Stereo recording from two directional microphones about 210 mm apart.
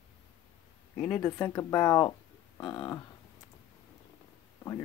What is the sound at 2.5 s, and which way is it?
Cattle, 20° left (ahead or behind).